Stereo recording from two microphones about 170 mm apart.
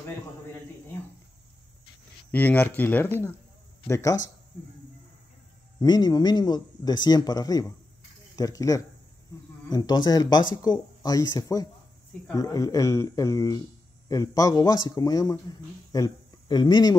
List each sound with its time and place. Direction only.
2.3 s speech: 10° left (ahead or behind)
5.8 s speech: 25° left (ahead or behind)